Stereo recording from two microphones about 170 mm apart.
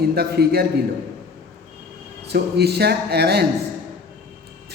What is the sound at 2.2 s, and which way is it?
A man's voice, 70° right (ahead or behind).